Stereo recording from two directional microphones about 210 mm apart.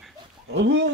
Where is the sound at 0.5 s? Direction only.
60° right (ahead or behind).